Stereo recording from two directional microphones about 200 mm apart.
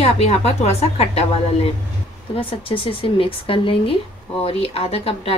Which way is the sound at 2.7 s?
25° left (ahead or behind).